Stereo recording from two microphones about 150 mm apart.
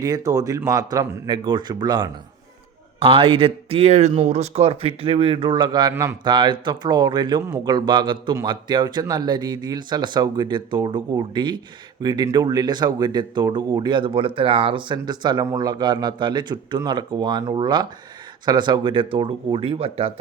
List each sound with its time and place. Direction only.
0.0 s speech: 25° right (ahead or behind)
3.0 s speech: 40° right (ahead or behind)
5.9 s a man's voice: 15° right (ahead or behind)
6.2 s speech: 30° right (ahead or behind)